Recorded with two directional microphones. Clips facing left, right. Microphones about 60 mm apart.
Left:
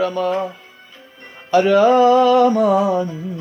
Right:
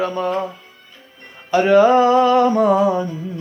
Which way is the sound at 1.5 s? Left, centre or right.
Centre.